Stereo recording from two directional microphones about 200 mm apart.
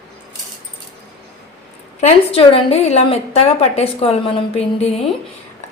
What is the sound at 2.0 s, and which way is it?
A woman's voice, 30° left (ahead or behind).